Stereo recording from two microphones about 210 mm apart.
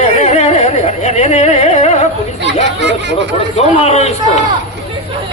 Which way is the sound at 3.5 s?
30° left (ahead or behind).